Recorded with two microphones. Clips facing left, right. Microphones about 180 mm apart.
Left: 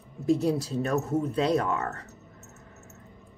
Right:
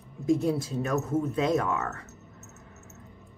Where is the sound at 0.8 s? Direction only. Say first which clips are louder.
Even; 35° left (ahead or behind).